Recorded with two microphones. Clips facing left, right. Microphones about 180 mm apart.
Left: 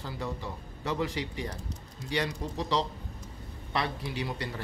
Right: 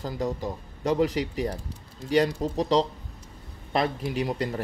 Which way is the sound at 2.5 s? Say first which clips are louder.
Right 7 dB; 45° right (ahead or behind).